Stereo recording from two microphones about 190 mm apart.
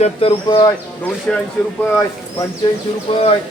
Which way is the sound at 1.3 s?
5° left (ahead or behind).